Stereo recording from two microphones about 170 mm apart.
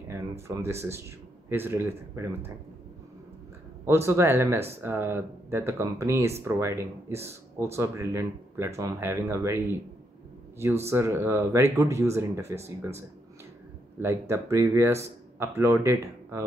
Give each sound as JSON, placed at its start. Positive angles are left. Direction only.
{"t": 0.1, "sound": "speech", "side_deg": -15}
{"t": 3.8, "sound": "speech", "side_deg": -15}
{"t": 10.9, "sound": "speech", "side_deg": -15}
{"t": 13.9, "sound": "speech", "side_deg": -15}